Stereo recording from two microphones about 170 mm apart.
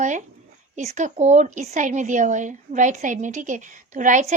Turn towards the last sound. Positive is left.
turn(degrees=-50)  # may be behind; listen again after turning